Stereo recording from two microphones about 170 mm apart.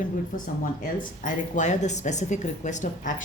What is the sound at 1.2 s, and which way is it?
Speech, 50° left (ahead or behind).